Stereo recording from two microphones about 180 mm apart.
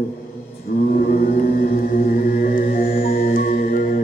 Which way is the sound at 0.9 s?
55° left (ahead or behind).